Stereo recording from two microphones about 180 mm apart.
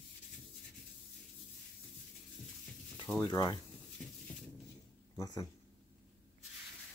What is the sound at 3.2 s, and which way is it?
Speech, 20° left (ahead or behind).